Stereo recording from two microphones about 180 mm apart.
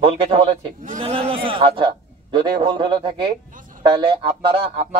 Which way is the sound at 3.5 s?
50° right (ahead or behind).